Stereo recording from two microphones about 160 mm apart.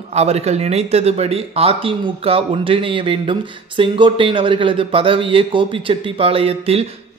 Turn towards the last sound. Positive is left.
turn(degrees=-40)  # may be behind; listen again after turning